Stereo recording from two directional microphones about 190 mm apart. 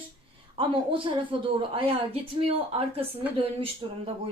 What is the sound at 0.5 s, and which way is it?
A woman's voice, 25° right (ahead or behind).